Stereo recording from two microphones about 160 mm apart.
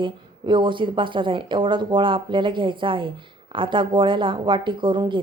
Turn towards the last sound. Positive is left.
turn(degrees=-30)  # may be behind; listen again after turning